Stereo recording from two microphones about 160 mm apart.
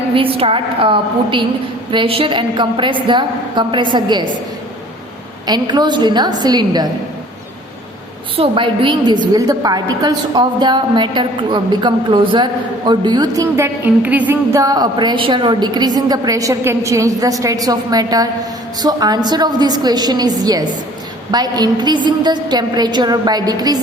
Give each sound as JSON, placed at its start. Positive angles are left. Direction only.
{"t": 0.1, "sound": "a woman's voice", "side_deg": -35}
{"t": 5.5, "sound": "speech", "side_deg": -25}
{"t": 8.4, "sound": "speech", "side_deg": -30}